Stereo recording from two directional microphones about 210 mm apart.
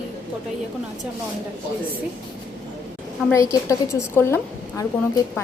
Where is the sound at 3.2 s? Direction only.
15° left (ahead or behind).